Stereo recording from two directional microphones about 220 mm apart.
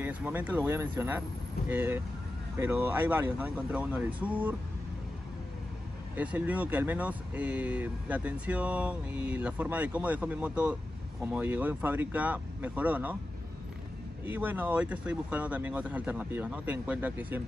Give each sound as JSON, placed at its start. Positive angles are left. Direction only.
{"t": 0.0, "sound": "speech", "side_deg": -10}
{"t": 6.1, "sound": "speech", "side_deg": -5}
{"t": 14.2, "sound": "speech", "side_deg": -10}